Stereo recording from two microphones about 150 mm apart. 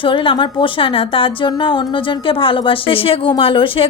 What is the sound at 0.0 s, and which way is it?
A woman's voice, 35° left (ahead or behind).